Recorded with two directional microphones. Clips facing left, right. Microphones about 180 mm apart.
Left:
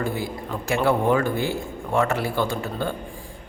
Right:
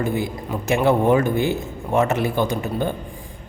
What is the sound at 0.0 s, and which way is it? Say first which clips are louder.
Speech: right 4 dB; 20° right (ahead or behind).